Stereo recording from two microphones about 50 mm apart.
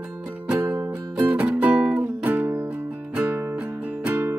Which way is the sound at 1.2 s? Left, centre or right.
Right.